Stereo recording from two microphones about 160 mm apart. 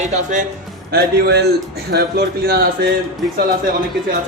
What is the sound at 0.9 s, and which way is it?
Speech, 85° right.